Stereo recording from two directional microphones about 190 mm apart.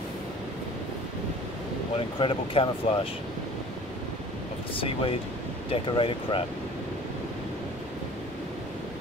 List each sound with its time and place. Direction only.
2.0 s speech: 25° left (ahead or behind)
4.7 s speech: 30° left (ahead or behind)